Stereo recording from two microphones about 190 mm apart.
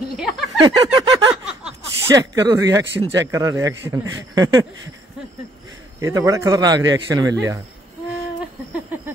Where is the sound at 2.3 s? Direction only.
20° right (ahead or behind).